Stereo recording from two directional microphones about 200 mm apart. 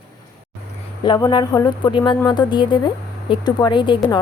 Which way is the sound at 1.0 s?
25° left (ahead or behind).